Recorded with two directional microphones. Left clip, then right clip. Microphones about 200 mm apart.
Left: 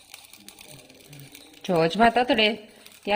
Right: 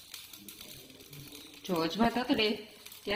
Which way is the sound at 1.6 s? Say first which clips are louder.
Left 11 dB; 45° left (ahead or behind).